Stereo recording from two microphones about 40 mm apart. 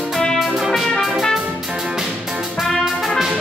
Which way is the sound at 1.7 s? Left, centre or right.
Centre.